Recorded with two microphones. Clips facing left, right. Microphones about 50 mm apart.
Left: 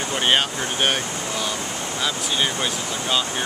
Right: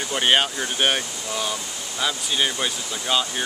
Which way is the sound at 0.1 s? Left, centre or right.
Centre.